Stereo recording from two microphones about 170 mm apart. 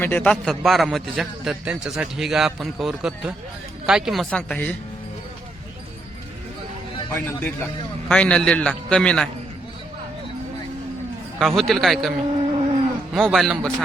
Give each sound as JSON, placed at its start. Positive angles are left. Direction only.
{"t": 0.0, "sound": "a man's voice", "side_deg": 10}
{"t": 7.1, "sound": "a man's voice", "side_deg": 10}
{"t": 11.3, "sound": "a man's voice", "side_deg": 0}
{"t": 12.4, "sound": "a sound", "side_deg": -35}
{"t": 13.1, "sound": "a man's voice", "side_deg": 0}